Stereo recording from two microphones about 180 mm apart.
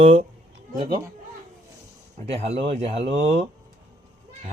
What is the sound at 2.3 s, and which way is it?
Speech, 35° right (ahead or behind).